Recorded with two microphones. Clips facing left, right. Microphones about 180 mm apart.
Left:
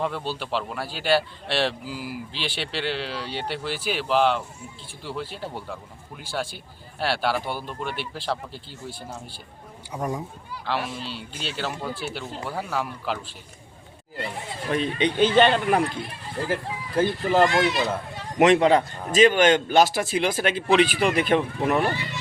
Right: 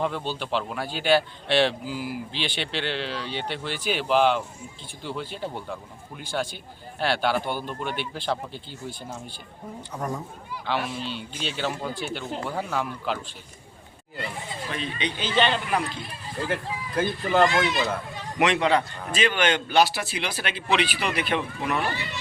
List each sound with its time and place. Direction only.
0.0 s speech: 5° left (ahead or behind)
14.7 s speech: 50° left (ahead or behind)
16.5 s speech: 30° left (ahead or behind)